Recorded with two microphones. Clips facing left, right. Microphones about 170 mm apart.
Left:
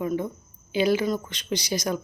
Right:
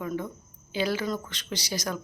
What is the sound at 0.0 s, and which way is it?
A woman's voice, 20° left (ahead or behind).